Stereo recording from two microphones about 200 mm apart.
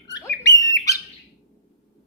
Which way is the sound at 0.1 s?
15° left (ahead or behind).